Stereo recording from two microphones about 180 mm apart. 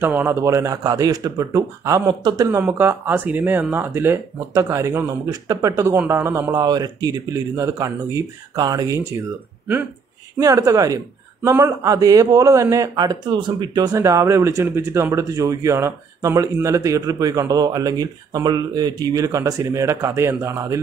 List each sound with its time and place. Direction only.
0.0 s speech: 10° right (ahead or behind)
10.4 s speech: 20° right (ahead or behind)